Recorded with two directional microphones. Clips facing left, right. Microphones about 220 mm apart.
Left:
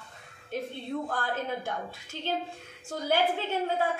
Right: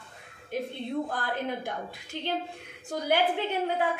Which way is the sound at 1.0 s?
15° right (ahead or behind).